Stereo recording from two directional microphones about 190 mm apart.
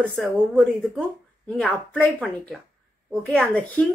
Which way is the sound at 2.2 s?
Centre (ahead or behind).